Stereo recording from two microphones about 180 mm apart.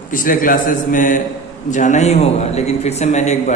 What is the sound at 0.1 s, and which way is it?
A man's voice, 50° left (ahead or behind).